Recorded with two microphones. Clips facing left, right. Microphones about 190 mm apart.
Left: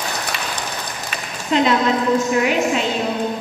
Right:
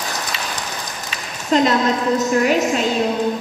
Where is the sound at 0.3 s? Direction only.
55° left (ahead or behind).